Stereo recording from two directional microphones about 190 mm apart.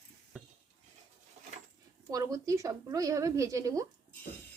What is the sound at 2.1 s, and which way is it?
A woman's voice, 20° right (ahead or behind).